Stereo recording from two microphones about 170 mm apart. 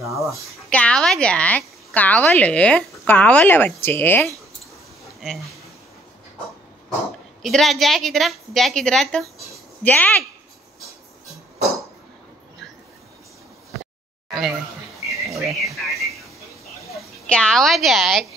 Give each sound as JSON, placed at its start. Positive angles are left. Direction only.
{"t": 0.0, "sound": "a sound", "side_deg": -15}
{"t": 0.7, "sound": "a woman's voice", "side_deg": 5}
{"t": 5.2, "sound": "speech", "side_deg": 0}
{"t": 7.4, "sound": "a woman's voice", "side_deg": 0}
{"t": 14.3, "sound": "a sound", "side_deg": 0}
{"t": 16.9, "sound": "speech", "side_deg": 5}